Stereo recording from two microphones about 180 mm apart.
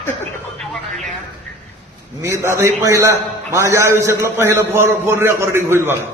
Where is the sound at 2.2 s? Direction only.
15° right (ahead or behind).